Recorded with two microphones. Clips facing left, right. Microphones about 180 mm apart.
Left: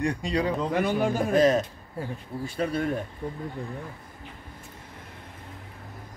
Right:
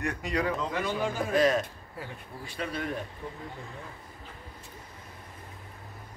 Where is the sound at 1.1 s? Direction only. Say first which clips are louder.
Left 3 dB; 45° left (ahead or behind).